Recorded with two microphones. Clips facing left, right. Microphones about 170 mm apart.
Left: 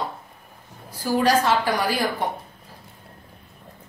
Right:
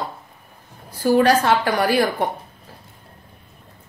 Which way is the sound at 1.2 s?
60° right (ahead or behind).